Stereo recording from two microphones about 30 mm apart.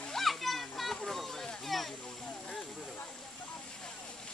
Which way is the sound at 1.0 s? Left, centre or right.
Centre.